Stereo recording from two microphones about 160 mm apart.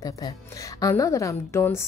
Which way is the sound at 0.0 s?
20° left (ahead or behind).